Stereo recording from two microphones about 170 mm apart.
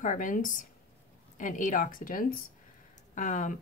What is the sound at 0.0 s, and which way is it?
Speech, 50° left (ahead or behind).